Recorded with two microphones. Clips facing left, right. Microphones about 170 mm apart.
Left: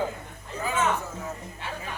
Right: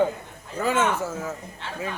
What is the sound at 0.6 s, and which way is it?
Speech, 80° right.